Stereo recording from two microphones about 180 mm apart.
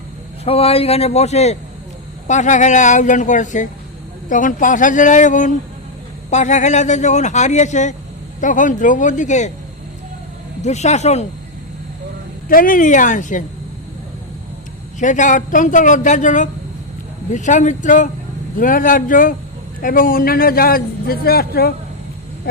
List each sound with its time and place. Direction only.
0.4 s speech: 35° left (ahead or behind)
10.6 s speech: 40° left (ahead or behind)
12.5 s speech: 50° left (ahead or behind)
14.9 s a man's voice: 45° left (ahead or behind)